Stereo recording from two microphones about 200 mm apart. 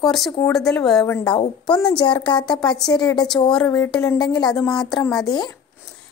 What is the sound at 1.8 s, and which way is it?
A woman's voice, 20° left (ahead or behind).